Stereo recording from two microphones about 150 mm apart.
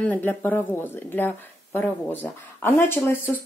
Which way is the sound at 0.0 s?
10° left (ahead or behind).